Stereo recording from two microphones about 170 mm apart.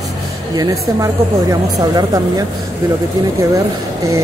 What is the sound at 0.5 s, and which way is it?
Speech, 20° right (ahead or behind).